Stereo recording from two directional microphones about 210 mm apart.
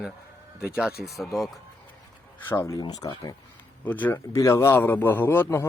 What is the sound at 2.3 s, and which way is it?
Speech, 15° left (ahead or behind).